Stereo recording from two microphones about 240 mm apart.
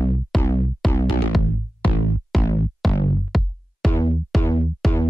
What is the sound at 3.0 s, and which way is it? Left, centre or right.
Music, centre.